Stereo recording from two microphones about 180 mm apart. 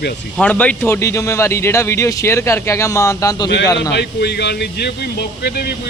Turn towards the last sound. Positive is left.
turn(degrees=65)  # may be behind; listen again after turning